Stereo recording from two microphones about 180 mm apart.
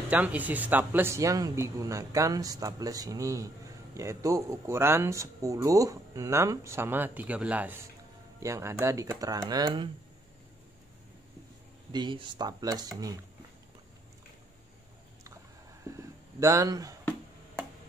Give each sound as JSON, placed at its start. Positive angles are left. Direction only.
{"t": 0.1, "sound": "speech", "side_deg": -10}
{"t": 11.9, "sound": "speech", "side_deg": -25}
{"t": 16.3, "sound": "speech", "side_deg": -15}